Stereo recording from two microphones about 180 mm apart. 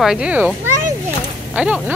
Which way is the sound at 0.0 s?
5° right (ahead or behind).